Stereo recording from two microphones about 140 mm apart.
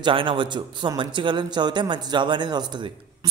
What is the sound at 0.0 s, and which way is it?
A man's voice, 40° right (ahead or behind).